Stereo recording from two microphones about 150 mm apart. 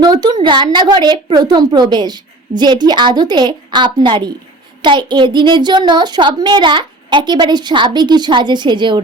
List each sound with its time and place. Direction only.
0.0 s a woman's voice: 25° right (ahead or behind)